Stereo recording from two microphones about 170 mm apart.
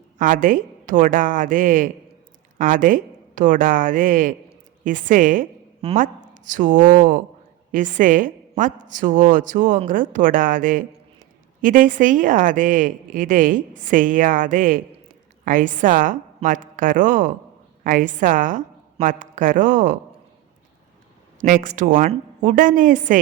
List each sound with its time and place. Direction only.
0.2 s a woman's voice: 50° right (ahead or behind)
21.4 s a woman's voice: 50° right (ahead or behind)